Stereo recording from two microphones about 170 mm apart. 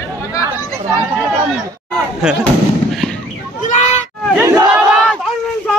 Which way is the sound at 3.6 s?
45° left (ahead or behind).